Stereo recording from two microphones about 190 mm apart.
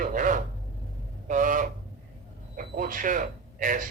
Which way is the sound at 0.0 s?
45° right (ahead or behind).